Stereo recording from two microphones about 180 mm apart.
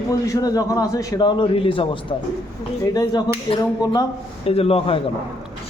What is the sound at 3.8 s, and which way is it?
Speech, 20° left (ahead or behind).